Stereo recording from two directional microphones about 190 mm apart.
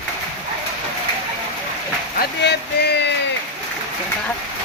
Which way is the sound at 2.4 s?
60° left (ahead or behind).